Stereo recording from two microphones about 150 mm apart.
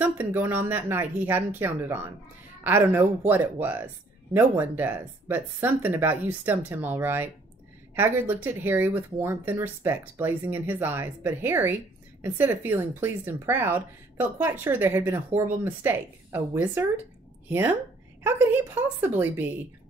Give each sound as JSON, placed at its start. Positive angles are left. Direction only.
{"t": 0.0, "sound": "speech", "side_deg": -15}